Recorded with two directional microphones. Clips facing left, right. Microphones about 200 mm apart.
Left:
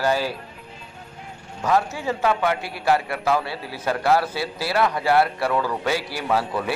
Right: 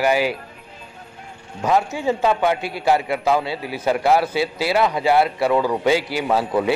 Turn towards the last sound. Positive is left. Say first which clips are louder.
# right 4 dB
turn(degrees=-20)  # may be behind; listen again after turning